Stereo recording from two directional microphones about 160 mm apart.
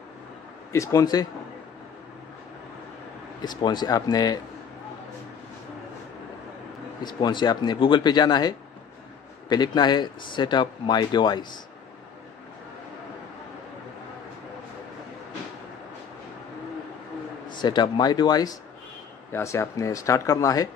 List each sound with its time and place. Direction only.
0.7 s speech: 20° left (ahead or behind)
3.4 s speech: 25° left (ahead or behind)
7.0 s speech: 25° left (ahead or behind)
17.5 s speech: 30° left (ahead or behind)